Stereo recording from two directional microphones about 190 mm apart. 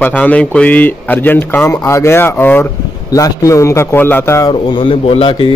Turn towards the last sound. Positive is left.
turn(degrees=30)  # may be behind; listen again after turning